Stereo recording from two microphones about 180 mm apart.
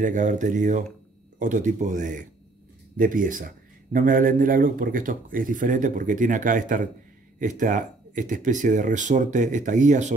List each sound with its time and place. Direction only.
0.0 s speech: 45° right (ahead or behind)